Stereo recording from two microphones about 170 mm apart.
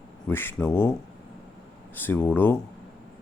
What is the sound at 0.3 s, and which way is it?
Speech, 10° left (ahead or behind).